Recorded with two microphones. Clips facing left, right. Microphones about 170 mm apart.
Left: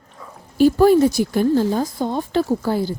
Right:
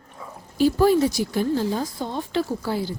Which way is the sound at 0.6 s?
50° left (ahead or behind).